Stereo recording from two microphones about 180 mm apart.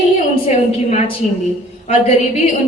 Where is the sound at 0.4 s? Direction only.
40° left (ahead or behind).